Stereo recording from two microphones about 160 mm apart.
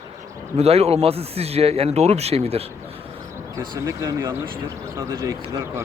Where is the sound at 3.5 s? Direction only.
20° right (ahead or behind).